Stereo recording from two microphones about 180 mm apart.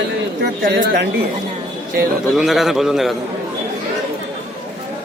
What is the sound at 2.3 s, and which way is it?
Speech, centre (ahead or behind).